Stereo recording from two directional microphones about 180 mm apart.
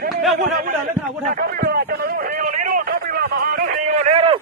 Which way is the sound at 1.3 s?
55° right (ahead or behind).